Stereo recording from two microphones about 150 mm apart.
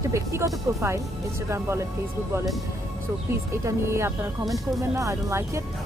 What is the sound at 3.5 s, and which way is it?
Speech, 20° right (ahead or behind).